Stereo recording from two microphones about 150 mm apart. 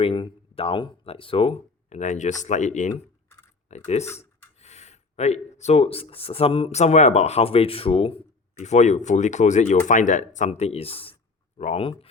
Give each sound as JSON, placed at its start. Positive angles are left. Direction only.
{"t": 0.0, "sound": "speech", "side_deg": 35}
{"t": 2.0, "sound": "speech", "side_deg": 55}
{"t": 8.5, "sound": "speech", "side_deg": 50}